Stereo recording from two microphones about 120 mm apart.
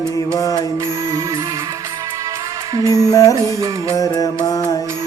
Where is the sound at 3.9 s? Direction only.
30° left (ahead or behind).